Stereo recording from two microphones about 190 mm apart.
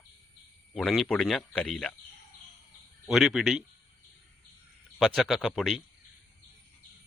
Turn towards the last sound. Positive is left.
turn(degrees=0)  # may be behind; listen again after turning